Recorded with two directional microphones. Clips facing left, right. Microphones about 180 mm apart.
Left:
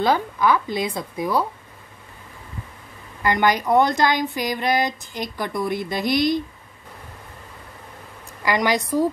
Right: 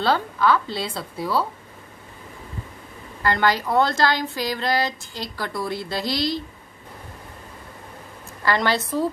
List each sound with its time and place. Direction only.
0.0 s speech: 15° left (ahead or behind)
3.2 s a woman's voice: 15° left (ahead or behind)
8.4 s speech: 15° left (ahead or behind)